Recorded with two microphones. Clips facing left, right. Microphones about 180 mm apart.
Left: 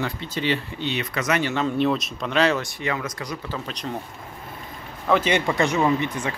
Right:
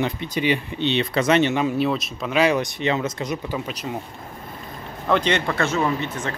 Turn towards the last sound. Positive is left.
turn(degrees=15)  # may be behind; listen again after turning